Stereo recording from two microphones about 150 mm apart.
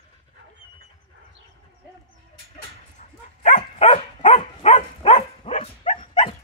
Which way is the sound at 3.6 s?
35° left (ahead or behind).